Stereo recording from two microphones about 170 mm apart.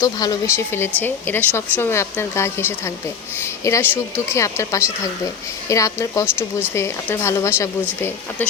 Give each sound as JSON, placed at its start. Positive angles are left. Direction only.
{"t": 0.0, "sound": "speech", "side_deg": 20}